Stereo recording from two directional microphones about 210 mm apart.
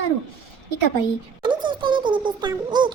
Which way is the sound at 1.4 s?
20° right (ahead or behind).